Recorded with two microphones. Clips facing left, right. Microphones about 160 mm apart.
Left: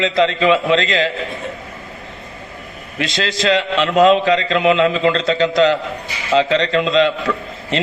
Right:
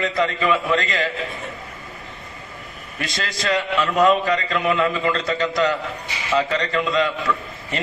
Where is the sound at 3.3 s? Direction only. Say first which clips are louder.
Left 5 dB; 90° left.